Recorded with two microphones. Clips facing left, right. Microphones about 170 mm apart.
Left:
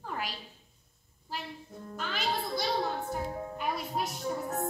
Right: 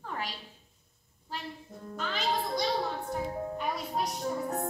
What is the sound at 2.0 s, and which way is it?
Music, 5° left (ahead or behind).